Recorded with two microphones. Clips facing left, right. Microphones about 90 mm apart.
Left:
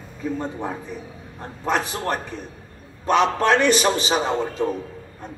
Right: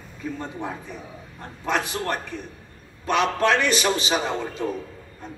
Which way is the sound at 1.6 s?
30° left (ahead or behind).